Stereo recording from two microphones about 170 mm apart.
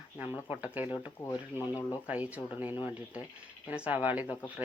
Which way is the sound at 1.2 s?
15° left (ahead or behind).